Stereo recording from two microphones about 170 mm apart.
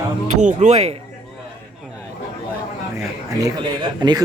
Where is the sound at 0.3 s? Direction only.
45° right (ahead or behind).